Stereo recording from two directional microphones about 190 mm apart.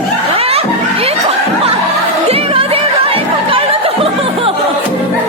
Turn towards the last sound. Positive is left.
turn(degrees=-30)  # may be behind; listen again after turning